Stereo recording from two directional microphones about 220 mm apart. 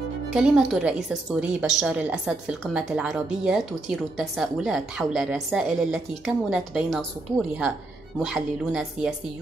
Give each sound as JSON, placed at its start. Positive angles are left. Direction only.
{"t": 0.3, "sound": "a woman's voice", "side_deg": -5}
{"t": 8.3, "sound": "a woman's voice", "side_deg": -5}